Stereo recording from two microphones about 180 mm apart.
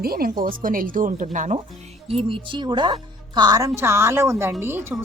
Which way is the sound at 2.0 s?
30° right (ahead or behind).